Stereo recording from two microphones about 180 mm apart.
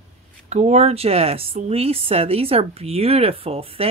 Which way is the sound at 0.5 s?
40° right (ahead or behind).